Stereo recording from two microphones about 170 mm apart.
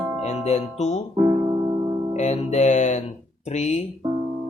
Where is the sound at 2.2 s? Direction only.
45° left (ahead or behind).